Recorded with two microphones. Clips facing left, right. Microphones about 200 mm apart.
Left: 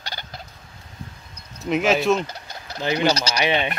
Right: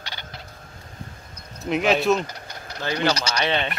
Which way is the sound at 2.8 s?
15° left (ahead or behind).